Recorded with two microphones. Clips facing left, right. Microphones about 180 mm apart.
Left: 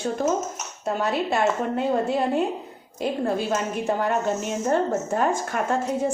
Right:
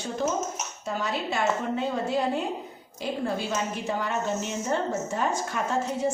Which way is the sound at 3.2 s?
55° left (ahead or behind).